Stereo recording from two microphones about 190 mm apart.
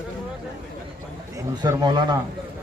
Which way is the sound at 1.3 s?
20° right (ahead or behind).